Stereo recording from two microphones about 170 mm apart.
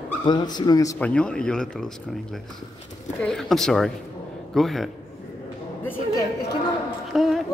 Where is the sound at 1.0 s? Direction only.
5° left (ahead or behind).